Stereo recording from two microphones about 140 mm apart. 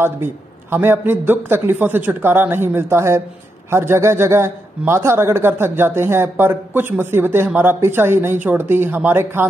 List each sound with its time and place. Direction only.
0.0 s a man's voice: 15° right (ahead or behind)